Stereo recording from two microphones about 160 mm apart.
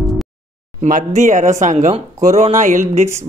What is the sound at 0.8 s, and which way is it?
A man's voice, 55° right (ahead or behind).